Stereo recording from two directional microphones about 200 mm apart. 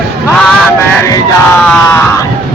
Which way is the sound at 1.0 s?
15° left (ahead or behind).